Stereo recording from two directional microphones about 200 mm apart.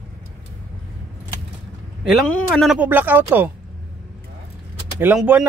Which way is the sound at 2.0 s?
Centre (ahead or behind).